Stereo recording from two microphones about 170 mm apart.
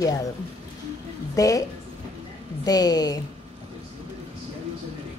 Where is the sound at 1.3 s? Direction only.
20° left (ahead or behind).